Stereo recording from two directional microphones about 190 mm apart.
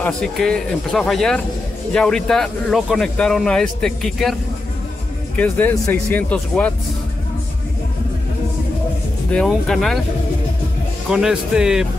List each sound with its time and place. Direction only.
0.0 s speech: 5° left (ahead or behind)
5.4 s speech: 10° left (ahead or behind)
9.3 s speech: 5° left (ahead or behind)
11.1 s speech: 5° right (ahead or behind)